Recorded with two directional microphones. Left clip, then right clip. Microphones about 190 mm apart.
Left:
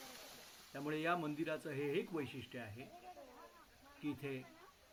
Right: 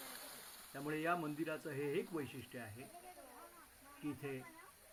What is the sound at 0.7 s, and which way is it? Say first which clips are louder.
Speech: even; centre (ahead or behind).